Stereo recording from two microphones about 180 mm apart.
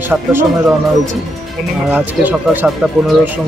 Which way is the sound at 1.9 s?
10° right (ahead or behind).